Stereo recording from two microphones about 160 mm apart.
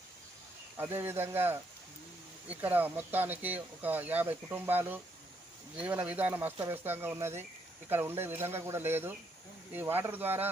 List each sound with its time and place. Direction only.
0.8 s speech: 15° right (ahead or behind)